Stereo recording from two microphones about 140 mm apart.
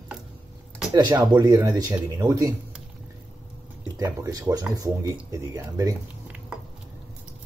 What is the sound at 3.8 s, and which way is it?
Speech, 25° right (ahead or behind).